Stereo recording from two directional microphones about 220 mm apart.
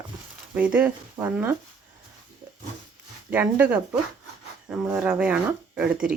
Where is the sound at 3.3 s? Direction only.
5° right (ahead or behind).